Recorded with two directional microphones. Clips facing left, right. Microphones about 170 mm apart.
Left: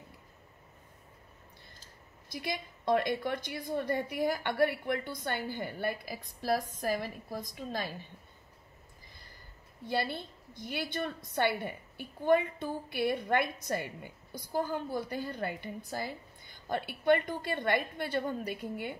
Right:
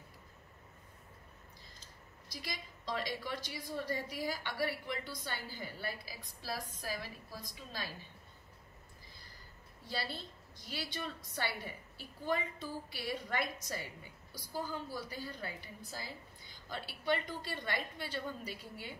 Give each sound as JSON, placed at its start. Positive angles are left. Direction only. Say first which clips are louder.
{"t": 2.2, "sound": "a woman's voice", "louder": "left 9 dB", "side_deg": 60}
{"t": 9.8, "sound": "a woman's voice", "louder": "left 8 dB", "side_deg": 60}